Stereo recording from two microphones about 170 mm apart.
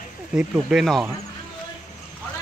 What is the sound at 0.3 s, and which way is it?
Speech, 5° right (ahead or behind).